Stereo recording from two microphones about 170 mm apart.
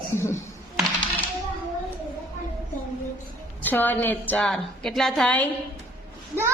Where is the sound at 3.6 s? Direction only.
10° left (ahead or behind).